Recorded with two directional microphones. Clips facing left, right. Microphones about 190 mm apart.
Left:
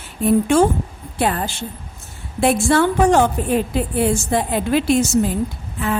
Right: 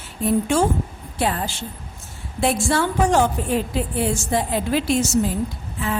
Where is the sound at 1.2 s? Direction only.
55° left (ahead or behind).